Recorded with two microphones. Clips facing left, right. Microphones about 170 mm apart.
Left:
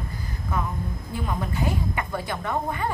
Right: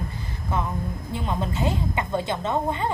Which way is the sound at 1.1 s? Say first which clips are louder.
Right 1 dB; 25° right (ahead or behind).